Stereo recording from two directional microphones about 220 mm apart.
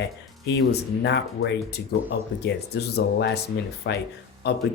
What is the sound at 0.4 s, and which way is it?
Speech, 50° left (ahead or behind).